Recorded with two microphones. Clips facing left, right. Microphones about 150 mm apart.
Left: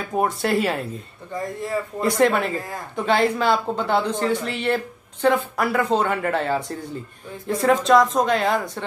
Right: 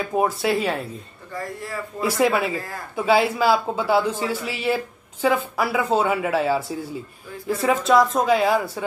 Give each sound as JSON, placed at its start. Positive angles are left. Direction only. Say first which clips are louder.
{"t": 0.1, "sound": "speech", "louder": "left 1 dB", "side_deg": 0}
{"t": 1.3, "sound": "speech", "louder": "left 4 dB", "side_deg": 20}
{"t": 2.0, "sound": "speech", "louder": "left 1 dB", "side_deg": -5}